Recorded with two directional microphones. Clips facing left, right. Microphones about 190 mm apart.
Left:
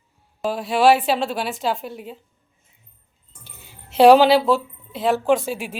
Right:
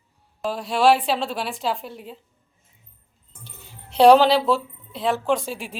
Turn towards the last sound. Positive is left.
turn(degrees=5)  # may be behind; listen again after turning